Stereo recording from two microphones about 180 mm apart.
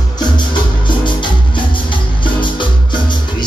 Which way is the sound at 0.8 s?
25° left (ahead or behind).